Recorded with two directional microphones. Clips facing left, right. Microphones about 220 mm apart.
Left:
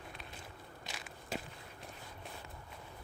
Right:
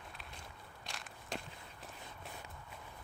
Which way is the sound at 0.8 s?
5° left (ahead or behind).